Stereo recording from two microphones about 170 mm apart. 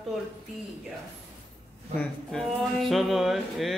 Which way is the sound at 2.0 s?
Centre (ahead or behind).